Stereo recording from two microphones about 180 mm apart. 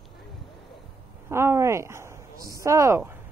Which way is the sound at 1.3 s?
15° right (ahead or behind).